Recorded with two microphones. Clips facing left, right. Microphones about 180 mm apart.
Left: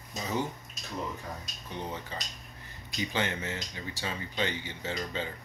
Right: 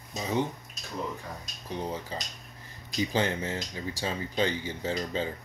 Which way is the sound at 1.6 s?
35° right (ahead or behind).